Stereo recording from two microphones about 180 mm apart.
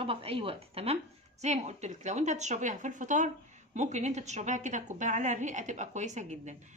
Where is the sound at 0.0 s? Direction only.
30° right (ahead or behind).